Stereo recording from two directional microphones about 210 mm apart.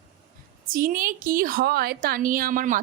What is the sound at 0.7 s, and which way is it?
A woman's voice, 40° right (ahead or behind).